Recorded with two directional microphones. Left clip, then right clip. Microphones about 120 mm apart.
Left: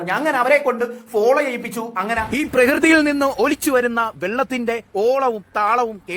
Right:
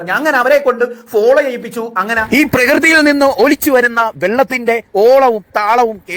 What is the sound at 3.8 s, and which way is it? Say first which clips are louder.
Speech: right 7 dB; 50° right (ahead or behind).